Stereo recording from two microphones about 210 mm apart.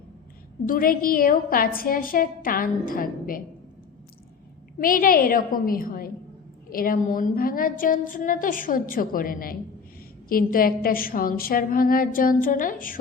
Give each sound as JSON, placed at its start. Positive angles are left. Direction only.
{"t": 0.6, "sound": "a woman's voice", "side_deg": 40}
{"t": 4.8, "sound": "a woman's voice", "side_deg": 40}